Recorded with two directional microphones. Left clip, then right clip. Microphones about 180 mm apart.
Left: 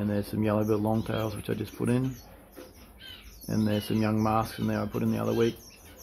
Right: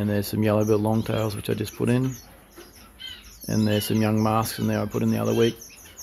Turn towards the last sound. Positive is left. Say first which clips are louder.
# right 5 dB
turn(degrees=-30)  # may be behind; listen again after turning